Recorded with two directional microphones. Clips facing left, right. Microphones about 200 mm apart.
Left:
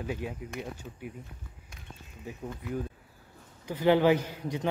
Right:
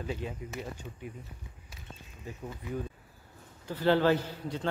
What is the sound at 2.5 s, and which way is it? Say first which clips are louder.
Speech: left 2 dB; centre (ahead or behind).